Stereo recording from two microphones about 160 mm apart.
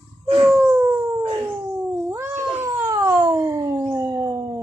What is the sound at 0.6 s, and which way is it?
Howl, 10° right (ahead or behind).